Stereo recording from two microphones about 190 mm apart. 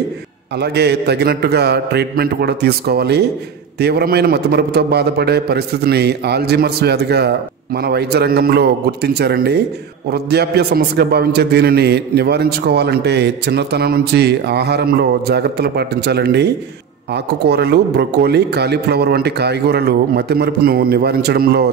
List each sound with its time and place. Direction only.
0.6 s a man's voice: 60° right (ahead or behind)